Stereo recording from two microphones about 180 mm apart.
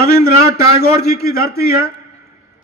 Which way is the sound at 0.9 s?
15° right (ahead or behind).